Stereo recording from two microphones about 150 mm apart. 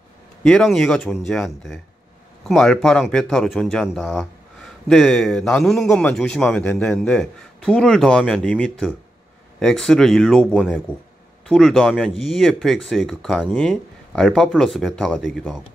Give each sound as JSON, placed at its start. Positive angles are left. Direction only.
{"t": 0.4, "sound": "speech", "side_deg": 5}